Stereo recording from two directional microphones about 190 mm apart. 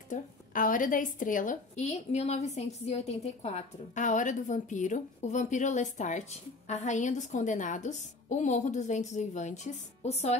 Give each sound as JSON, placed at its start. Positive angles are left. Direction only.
{"t": 0.1, "sound": "a woman's voice", "side_deg": 45}